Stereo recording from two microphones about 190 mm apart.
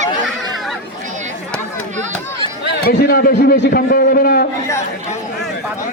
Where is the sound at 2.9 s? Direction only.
50° left (ahead or behind).